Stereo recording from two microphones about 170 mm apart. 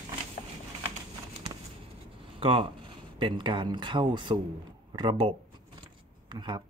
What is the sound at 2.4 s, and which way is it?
Speech, 30° right (ahead or behind).